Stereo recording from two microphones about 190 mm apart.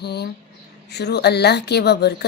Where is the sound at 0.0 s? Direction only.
60° left (ahead or behind).